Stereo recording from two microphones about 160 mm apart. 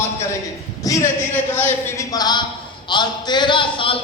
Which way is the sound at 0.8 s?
15° left (ahead or behind).